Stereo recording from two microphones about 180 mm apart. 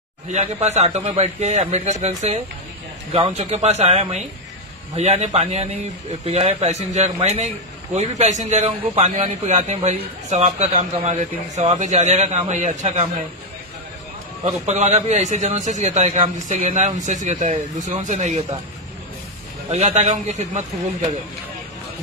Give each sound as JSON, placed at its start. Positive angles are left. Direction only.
{"t": 0.3, "sound": "a man's voice", "side_deg": -40}
{"t": 14.7, "sound": "a man's voice", "side_deg": -40}
{"t": 19.7, "sound": "a man's voice", "side_deg": -35}